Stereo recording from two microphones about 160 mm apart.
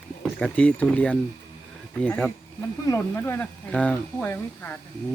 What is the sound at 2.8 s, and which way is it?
Speech, 15° left (ahead or behind).